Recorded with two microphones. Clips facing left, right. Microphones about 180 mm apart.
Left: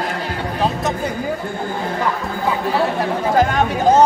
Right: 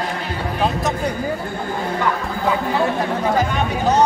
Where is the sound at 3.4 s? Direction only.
50° left (ahead or behind).